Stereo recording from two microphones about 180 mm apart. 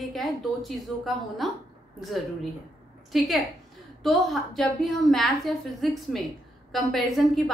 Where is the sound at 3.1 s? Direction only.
Centre (ahead or behind).